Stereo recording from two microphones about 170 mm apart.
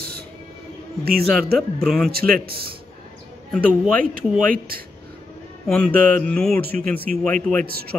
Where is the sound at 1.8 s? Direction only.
Centre (ahead or behind).